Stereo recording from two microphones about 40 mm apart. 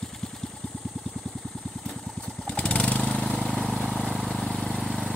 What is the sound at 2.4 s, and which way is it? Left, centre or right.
Vehicle, left.